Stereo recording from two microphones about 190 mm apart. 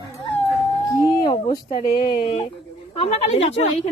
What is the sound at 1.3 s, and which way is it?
Speech, 25° left (ahead or behind).